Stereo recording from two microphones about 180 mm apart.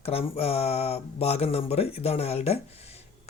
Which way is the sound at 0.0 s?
35° left (ahead or behind).